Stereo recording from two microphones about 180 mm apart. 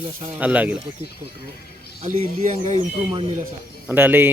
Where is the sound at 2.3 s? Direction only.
45° right (ahead or behind).